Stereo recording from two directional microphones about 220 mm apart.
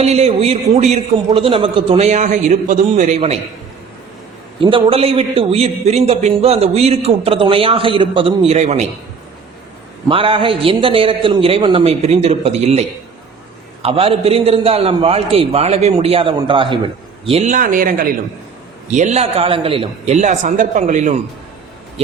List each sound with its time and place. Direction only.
0.0 s a man's voice: 30° right (ahead or behind)
4.6 s a man's voice: 25° right (ahead or behind)
10.1 s a man's voice: 25° right (ahead or behind)
13.8 s a man's voice: 25° right (ahead or behind)